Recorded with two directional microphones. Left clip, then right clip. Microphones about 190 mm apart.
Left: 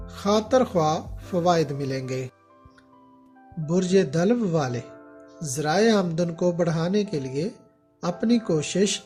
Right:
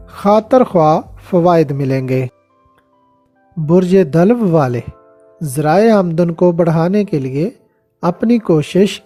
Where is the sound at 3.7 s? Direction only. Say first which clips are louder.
Right 11 dB; 50° right (ahead or behind).